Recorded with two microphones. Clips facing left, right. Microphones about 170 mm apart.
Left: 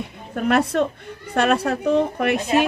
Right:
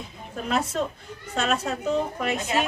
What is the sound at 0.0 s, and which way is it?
A woman's voice, 65° left (ahead or behind).